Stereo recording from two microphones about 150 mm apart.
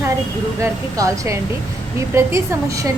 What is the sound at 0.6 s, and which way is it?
A woman's voice, 20° right (ahead or behind).